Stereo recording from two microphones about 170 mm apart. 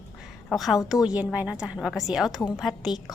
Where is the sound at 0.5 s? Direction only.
Centre (ahead or behind).